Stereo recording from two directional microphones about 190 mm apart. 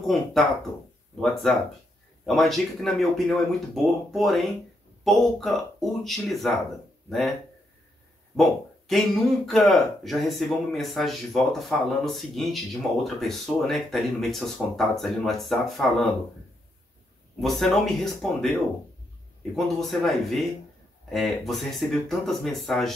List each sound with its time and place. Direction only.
0.0 s speech: centre (ahead or behind)
8.4 s speech: centre (ahead or behind)
17.4 s speech: centre (ahead or behind)